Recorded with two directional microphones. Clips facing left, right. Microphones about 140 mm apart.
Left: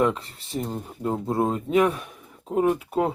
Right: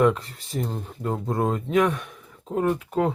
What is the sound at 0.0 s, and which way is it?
Speech, centre (ahead or behind).